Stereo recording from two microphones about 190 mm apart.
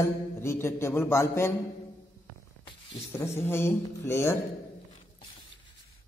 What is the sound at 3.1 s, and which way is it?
A man's voice, 15° left (ahead or behind).